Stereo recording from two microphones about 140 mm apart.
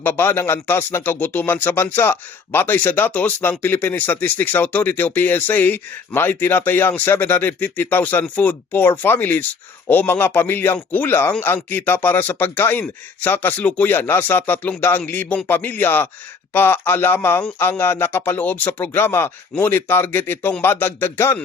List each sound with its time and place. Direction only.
0.0 s speech: 15° left (ahead or behind)